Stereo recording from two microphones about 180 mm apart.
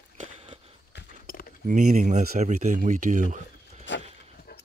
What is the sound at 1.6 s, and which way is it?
Speech, 45° right (ahead or behind).